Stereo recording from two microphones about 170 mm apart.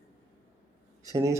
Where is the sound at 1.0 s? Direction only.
15° right (ahead or behind).